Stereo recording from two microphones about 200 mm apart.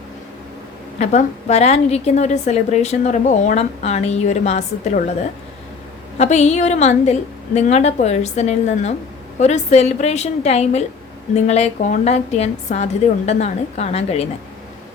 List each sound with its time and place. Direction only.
0.9 s a woman's voice: 35° left (ahead or behind)
6.1 s a woman's voice: 35° left (ahead or behind)